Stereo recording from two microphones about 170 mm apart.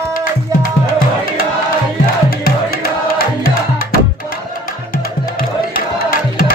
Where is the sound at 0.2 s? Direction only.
55° left (ahead or behind).